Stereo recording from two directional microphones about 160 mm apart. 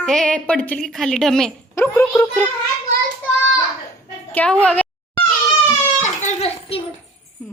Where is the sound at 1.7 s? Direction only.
15° left (ahead or behind).